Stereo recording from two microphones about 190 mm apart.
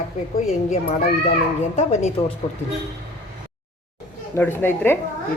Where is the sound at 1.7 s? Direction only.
35° left (ahead or behind).